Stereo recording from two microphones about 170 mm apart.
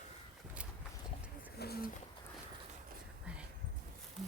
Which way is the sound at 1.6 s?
65° left (ahead or behind).